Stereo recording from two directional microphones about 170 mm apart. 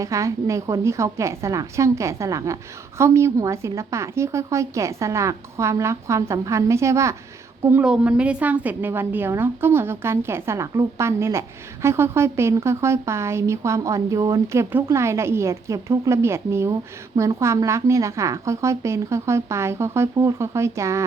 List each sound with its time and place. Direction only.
0.0 s a woman's voice: 20° right (ahead or behind)